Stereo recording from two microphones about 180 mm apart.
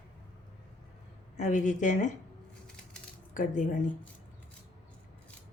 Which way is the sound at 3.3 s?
45° left (ahead or behind).